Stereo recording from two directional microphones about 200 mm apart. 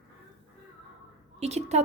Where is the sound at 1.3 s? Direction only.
35° right (ahead or behind).